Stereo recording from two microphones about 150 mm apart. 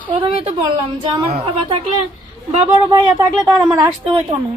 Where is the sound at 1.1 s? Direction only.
35° right (ahead or behind).